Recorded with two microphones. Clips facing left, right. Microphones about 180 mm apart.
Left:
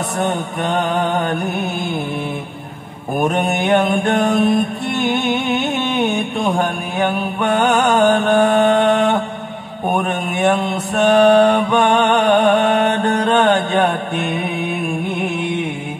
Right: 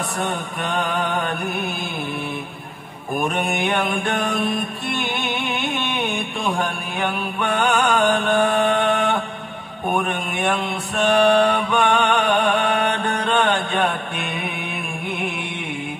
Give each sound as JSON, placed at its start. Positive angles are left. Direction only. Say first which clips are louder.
{"t": 0.3, "sound": "music", "louder": "left 6 dB", "side_deg": 40}
{"t": 3.7, "sound": "music", "louder": "left 7 dB", "side_deg": 40}
{"t": 8.0, "sound": "mantra", "louder": "left 5 dB", "side_deg": 40}
{"t": 11.1, "sound": "music", "louder": "left 5 dB", "side_deg": 40}